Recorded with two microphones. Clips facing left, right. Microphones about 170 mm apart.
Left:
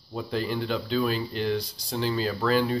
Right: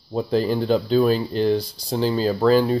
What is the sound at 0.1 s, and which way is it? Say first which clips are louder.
Speech: right 8 dB; 35° right (ahead or behind).